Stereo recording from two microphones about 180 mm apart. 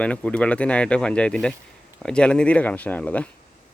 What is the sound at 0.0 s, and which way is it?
Speech, 5° left (ahead or behind).